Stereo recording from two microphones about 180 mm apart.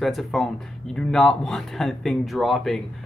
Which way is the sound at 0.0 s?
Centre (ahead or behind).